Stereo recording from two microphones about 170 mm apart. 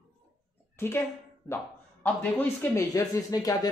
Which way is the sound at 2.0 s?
10° left (ahead or behind).